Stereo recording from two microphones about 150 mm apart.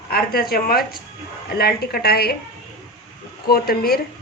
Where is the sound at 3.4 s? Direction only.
90° left.